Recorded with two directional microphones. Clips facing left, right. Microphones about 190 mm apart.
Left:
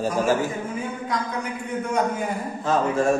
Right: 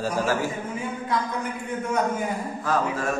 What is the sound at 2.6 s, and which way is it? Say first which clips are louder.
Speech: left 5 dB; 25° left (ahead or behind).